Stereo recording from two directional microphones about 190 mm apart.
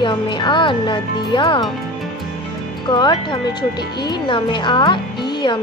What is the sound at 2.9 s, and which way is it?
Speech, 25° left (ahead or behind).